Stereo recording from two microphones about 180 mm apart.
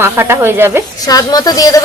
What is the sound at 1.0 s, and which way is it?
Speech, 20° left (ahead or behind).